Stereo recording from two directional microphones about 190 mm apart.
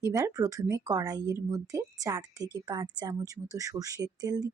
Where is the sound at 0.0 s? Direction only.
15° right (ahead or behind).